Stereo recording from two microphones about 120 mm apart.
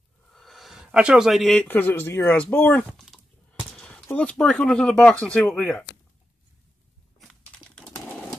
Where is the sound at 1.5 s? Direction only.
10° left (ahead or behind).